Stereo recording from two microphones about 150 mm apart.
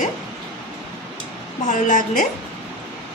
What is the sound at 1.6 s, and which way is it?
Speech, 55° left (ahead or behind).